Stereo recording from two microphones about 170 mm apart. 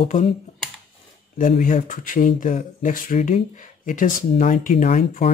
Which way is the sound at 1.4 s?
50° left (ahead or behind).